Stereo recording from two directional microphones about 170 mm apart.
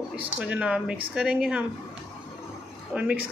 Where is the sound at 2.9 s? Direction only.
10° right (ahead or behind).